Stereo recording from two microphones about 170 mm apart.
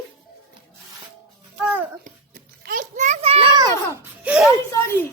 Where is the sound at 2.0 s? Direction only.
55° right (ahead or behind); by 3.5 s 35° right (ahead or behind).